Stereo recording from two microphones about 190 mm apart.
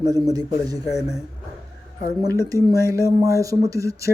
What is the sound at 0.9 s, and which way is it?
Speech, 5° right (ahead or behind).